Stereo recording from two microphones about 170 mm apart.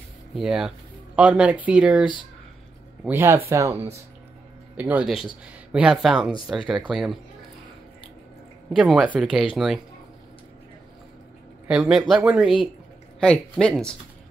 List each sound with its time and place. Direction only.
0.3 s speech: 5° right (ahead or behind)
3.1 s speech: 15° right (ahead or behind)
8.7 s speech: 5° right (ahead or behind)
11.6 s speech: 5° right (ahead or behind)
13.2 s speech: 5° left (ahead or behind)